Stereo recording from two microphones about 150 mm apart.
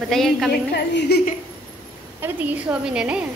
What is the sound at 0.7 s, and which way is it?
Speech, 90° left.